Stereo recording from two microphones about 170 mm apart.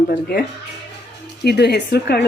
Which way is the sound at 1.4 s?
75° left (ahead or behind).